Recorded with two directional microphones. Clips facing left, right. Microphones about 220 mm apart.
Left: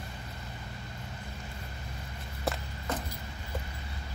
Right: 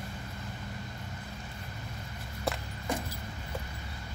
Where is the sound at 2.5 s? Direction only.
Centre (ahead or behind).